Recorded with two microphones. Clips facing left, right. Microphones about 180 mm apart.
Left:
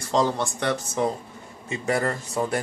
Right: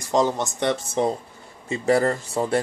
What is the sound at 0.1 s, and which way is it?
A man's voice, 20° right (ahead or behind).